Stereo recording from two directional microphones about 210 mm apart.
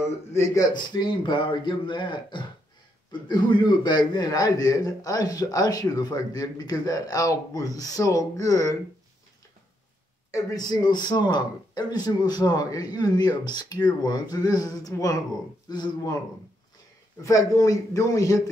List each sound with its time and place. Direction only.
0.0 s a man's voice: 15° left (ahead or behind)
10.3 s a man's voice: 20° left (ahead or behind)
17.2 s a man's voice: 15° left (ahead or behind)